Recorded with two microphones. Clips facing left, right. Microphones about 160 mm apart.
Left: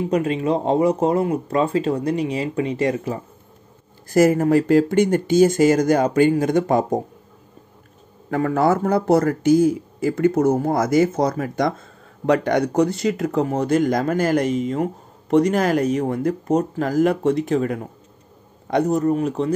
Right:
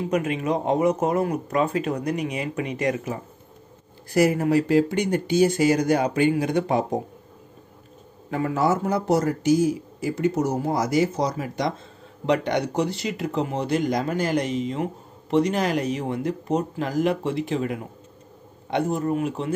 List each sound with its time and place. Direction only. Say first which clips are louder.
0.1 s speech: left 3 dB; 30° left (ahead or behind)
4.1 s speech: left 4 dB; 45° left (ahead or behind)
8.3 s a man's voice: left 4 dB; 55° left (ahead or behind); by 19.5 s 35° left (ahead or behind)